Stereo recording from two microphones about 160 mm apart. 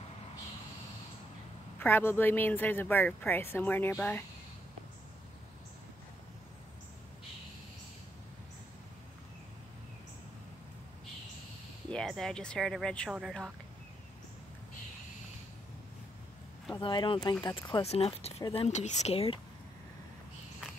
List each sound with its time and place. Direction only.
1.8 s speech: 15° left (ahead or behind)
11.9 s speech: 5° left (ahead or behind)
16.8 s speech: 30° left (ahead or behind)